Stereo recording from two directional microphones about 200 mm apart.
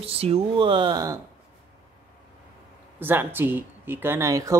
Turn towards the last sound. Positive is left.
turn(degrees=-15)  # may be behind; listen again after turning